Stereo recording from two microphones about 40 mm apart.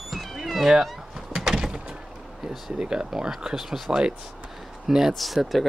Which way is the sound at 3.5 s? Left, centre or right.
Centre.